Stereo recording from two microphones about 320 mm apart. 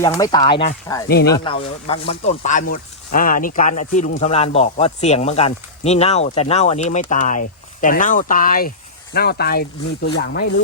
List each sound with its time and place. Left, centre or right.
0.0 s speech: centre
1.0 s speech: left
1.3 s speech: centre